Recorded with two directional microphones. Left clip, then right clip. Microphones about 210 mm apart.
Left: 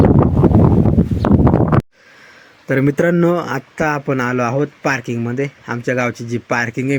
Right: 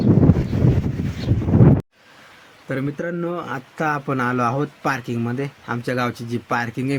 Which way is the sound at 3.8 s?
15° left (ahead or behind).